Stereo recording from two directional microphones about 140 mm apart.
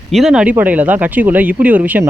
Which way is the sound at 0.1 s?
5° right (ahead or behind).